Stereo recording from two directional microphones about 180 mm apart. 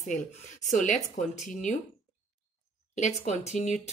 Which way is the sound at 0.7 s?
45° left (ahead or behind).